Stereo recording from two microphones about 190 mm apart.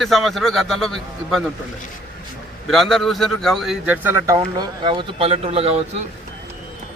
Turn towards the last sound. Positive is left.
turn(degrees=-35)  # may be behind; listen again after turning